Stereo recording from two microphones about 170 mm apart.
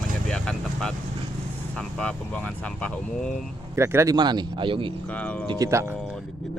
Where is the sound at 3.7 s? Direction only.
15° right (ahead or behind).